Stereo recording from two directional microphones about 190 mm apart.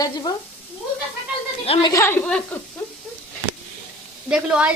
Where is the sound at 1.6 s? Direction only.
20° left (ahead or behind).